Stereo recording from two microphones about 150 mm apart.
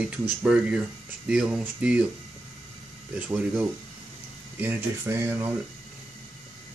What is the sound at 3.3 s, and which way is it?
Speech, 10° right (ahead or behind).